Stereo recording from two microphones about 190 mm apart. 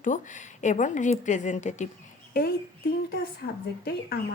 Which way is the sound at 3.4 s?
55° left (ahead or behind).